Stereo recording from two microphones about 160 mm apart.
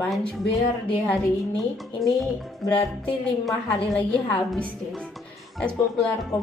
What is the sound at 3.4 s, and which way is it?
Speech, centre (ahead or behind).